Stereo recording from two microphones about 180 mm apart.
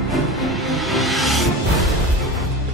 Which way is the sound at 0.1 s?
Centre (ahead or behind).